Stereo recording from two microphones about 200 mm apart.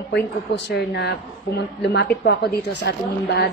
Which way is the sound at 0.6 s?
60° left (ahead or behind).